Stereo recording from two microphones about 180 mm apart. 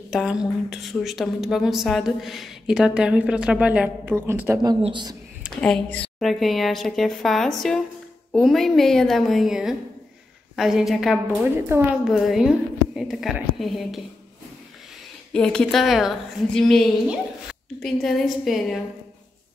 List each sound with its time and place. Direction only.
0.1 s a woman's voice: 5° right (ahead or behind)
4.8 s speech: 25° right (ahead or behind)
5.6 s a woman's voice: 5° left (ahead or behind)
15.3 s a woman's voice: 5° left (ahead or behind)
17.8 s a woman's voice: centre (ahead or behind)